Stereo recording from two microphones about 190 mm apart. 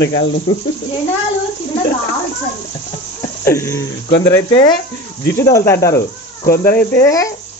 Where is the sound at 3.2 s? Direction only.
15° left (ahead or behind).